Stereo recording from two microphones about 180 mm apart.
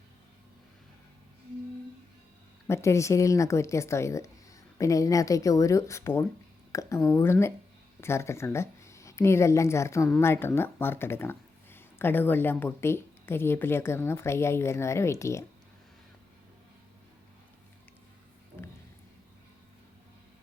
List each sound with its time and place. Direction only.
2.6 s speech: 15° left (ahead or behind)